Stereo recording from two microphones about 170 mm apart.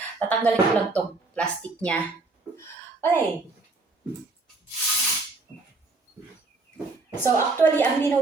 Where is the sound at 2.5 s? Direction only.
15° left (ahead or behind).